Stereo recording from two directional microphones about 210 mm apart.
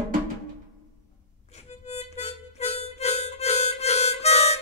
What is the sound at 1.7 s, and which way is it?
Harmonica, 30° left (ahead or behind).